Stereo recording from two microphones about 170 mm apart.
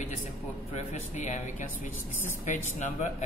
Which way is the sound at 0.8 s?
45° left (ahead or behind).